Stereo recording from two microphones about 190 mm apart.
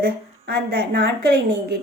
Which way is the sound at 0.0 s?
55° right (ahead or behind).